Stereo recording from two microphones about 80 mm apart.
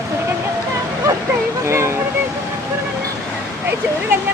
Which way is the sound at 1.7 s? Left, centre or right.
Right.